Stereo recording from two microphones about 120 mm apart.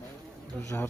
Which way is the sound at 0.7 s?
15° left (ahead or behind).